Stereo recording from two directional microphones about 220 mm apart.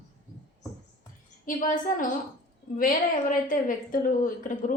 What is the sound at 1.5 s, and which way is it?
A woman's voice, 35° left (ahead or behind).